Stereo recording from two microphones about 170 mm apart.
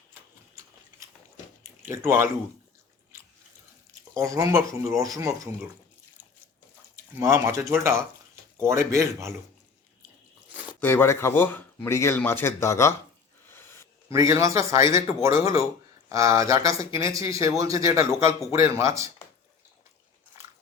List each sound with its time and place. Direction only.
1.9 s speech: 15° right (ahead or behind)
4.1 s speech: 20° right (ahead or behind)
6.9 s speech: 15° right (ahead or behind)
10.8 s speech: 15° left (ahead or behind)
13.5 s a sound: 15° left (ahead or behind)
14.1 s speech: 15° right (ahead or behind)